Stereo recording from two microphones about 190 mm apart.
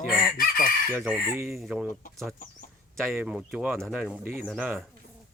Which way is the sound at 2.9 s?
10° right (ahead or behind).